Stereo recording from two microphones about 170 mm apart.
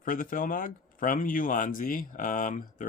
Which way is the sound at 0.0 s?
55° left (ahead or behind).